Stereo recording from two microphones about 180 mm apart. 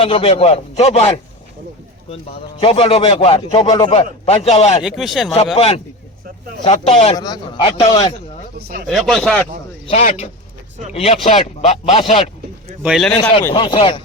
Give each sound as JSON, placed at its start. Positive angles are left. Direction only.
{"t": 0.0, "sound": "speech", "side_deg": 35}
{"t": 2.6, "sound": "speech", "side_deg": 30}
{"t": 4.8, "sound": "speech", "side_deg": 0}
{"t": 5.5, "sound": "a man's voice", "side_deg": 35}
{"t": 8.5, "sound": "speech", "side_deg": -60}
{"t": 8.9, "sound": "speech", "side_deg": 0}
{"t": 9.8, "sound": "speech", "side_deg": 40}
{"t": 12.8, "sound": "speech", "side_deg": 0}
{"t": 13.5, "sound": "a man's voice", "side_deg": 30}